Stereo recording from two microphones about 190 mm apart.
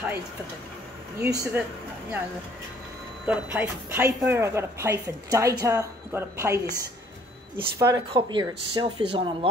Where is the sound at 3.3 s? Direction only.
10° right (ahead or behind).